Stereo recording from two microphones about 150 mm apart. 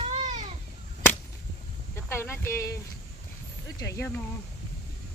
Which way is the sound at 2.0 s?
15° left (ahead or behind).